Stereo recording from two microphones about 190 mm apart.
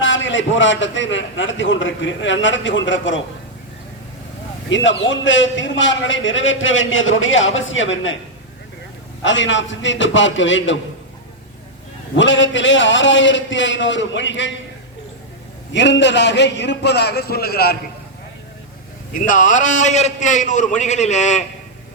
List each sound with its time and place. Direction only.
0.0 s a man's voice: 80° left
4.7 s a man's voice: 75° left (ahead or behind)
9.2 s a man's voice: 75° left (ahead or behind)
12.1 s a man's voice: 75° left (ahead or behind)
15.7 s a man's voice: 70° left (ahead or behind)
19.1 s a man's voice: 45° left (ahead or behind)